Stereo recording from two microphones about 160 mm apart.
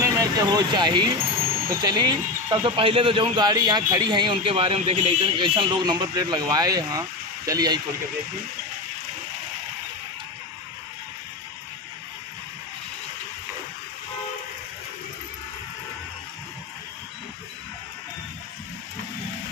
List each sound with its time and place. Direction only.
0.0 s speech: 20° right (ahead or behind)